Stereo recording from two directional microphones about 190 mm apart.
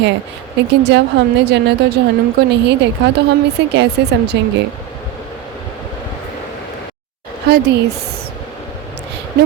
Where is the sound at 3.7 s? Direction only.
65° right (ahead or behind).